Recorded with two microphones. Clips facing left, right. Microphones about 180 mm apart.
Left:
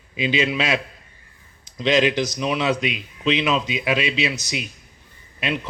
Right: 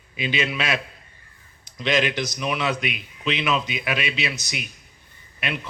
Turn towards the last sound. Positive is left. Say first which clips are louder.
# left 4 dB
turn(degrees=25)  # may be behind; listen again after turning